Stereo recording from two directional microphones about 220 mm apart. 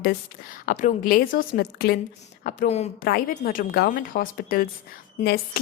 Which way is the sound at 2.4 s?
35° left (ahead or behind).